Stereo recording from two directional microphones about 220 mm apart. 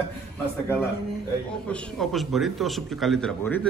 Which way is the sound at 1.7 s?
5° left (ahead or behind).